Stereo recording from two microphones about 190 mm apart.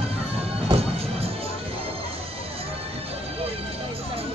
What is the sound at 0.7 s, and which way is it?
Music, 30° right (ahead or behind).